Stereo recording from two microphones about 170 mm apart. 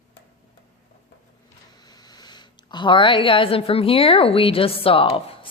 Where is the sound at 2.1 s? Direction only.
25° left (ahead or behind).